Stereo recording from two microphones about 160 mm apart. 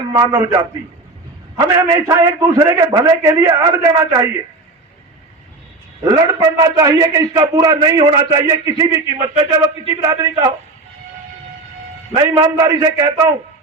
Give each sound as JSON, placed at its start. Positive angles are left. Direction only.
{"t": 0.1, "sound": "a man's voice", "side_deg": -25}
{"t": 6.1, "sound": "a man's voice", "side_deg": -25}
{"t": 12.1, "sound": "a man's voice", "side_deg": -25}